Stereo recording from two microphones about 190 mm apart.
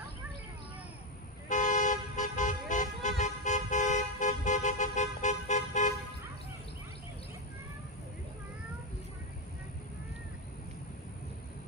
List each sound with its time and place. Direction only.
1.5 s toot: 40° left (ahead or behind)